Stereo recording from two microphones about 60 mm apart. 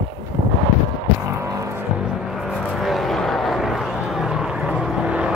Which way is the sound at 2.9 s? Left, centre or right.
Centre.